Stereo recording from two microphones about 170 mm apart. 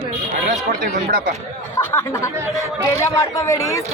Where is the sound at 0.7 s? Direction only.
65° right (ahead or behind).